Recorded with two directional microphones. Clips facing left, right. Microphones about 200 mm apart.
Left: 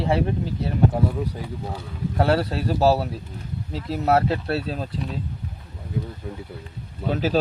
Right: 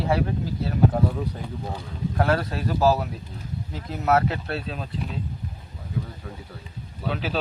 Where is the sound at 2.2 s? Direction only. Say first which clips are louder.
Left 3 dB; 30° left (ahead or behind).